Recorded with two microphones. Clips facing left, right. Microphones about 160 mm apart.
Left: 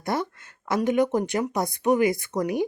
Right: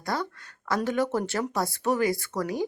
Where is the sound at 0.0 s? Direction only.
20° left (ahead or behind).